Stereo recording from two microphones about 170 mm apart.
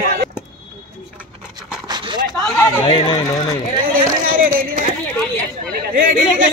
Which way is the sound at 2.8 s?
30° left (ahead or behind).